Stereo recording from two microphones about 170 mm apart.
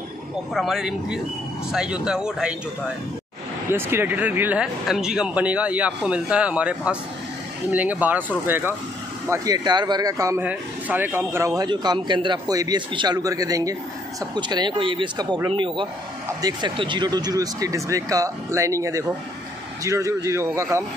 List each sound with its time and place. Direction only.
0.6 s speech: centre (ahead or behind)
3.7 s speech: 15° right (ahead or behind)